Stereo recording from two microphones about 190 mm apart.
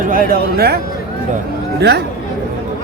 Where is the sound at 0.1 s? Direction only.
50° right (ahead or behind).